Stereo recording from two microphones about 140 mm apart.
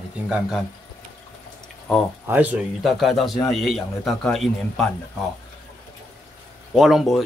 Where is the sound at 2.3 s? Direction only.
10° right (ahead or behind).